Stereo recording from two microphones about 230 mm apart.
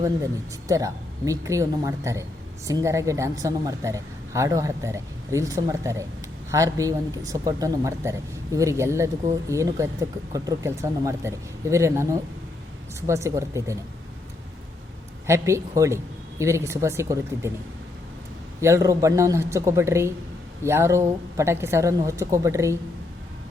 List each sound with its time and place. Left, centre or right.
0.7 s speech: centre
15.3 s speech: centre
18.6 s speech: centre